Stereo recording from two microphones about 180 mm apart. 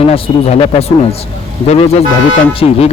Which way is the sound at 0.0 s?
35° left (ahead or behind).